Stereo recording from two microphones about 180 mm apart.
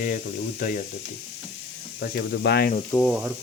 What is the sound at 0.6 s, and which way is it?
Speech, 50° left (ahead or behind).